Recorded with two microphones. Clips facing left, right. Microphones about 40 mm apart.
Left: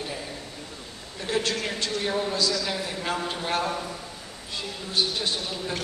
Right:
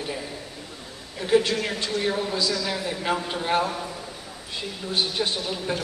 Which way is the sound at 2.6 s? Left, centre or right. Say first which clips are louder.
Right 3 dB; centre.